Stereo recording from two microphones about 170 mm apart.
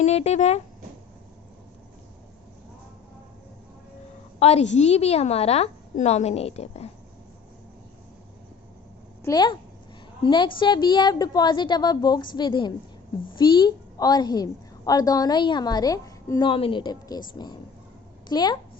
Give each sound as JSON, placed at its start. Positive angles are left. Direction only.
{"t": 0.0, "sound": "a woman's voice", "side_deg": 40}
{"t": 4.4, "sound": "a woman's voice", "side_deg": 35}
{"t": 9.2, "sound": "a woman's voice", "side_deg": 25}
{"t": 16.5, "sound": "a woman's voice", "side_deg": 30}